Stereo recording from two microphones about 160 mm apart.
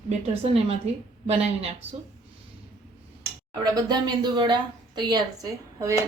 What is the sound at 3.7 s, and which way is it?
A woman's voice, 25° right (ahead or behind).